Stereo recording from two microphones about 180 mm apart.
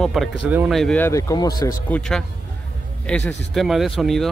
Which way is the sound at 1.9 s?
5° left (ahead or behind).